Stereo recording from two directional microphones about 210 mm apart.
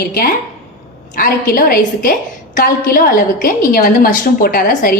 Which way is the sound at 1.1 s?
40° left (ahead or behind).